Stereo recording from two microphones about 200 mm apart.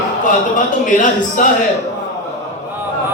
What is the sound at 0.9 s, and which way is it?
Speech, 40° left (ahead or behind).